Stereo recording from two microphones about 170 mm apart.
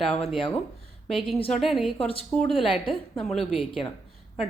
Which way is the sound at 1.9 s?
35° left (ahead or behind).